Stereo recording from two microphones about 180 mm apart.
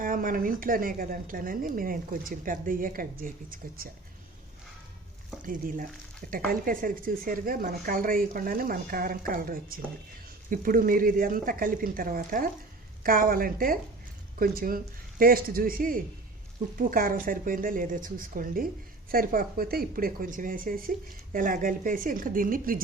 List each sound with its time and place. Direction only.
0.0 s a woman's voice: 50° right (ahead or behind)
5.5 s a woman's voice: 50° right (ahead or behind)